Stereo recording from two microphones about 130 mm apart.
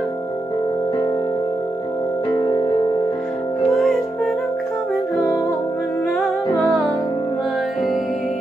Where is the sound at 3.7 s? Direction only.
Centre (ahead or behind).